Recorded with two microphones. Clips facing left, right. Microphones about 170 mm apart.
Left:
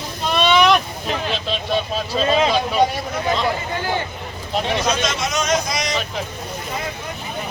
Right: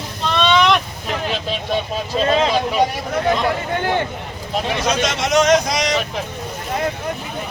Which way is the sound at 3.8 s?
60° right (ahead or behind).